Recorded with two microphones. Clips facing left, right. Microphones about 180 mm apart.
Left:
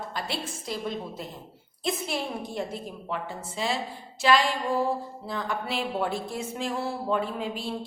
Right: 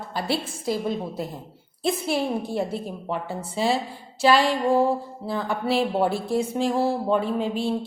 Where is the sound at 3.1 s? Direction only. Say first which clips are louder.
Right 4 dB; 35° right (ahead or behind).